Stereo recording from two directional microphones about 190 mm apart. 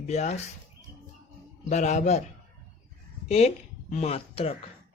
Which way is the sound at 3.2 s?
35° left (ahead or behind).